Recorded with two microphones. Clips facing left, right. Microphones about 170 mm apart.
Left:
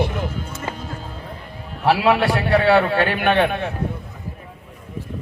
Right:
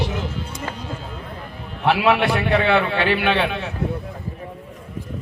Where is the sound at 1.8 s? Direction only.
35° left (ahead or behind).